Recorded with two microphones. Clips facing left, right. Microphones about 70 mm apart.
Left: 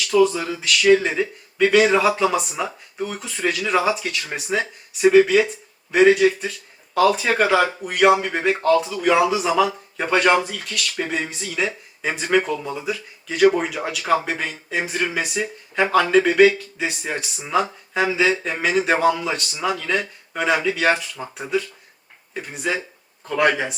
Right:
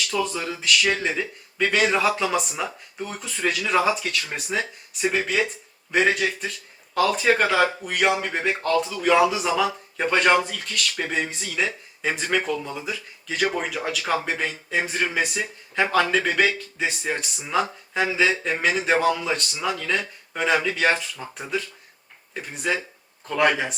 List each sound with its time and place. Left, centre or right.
0.3 s speech: centre
22.4 s speech: centre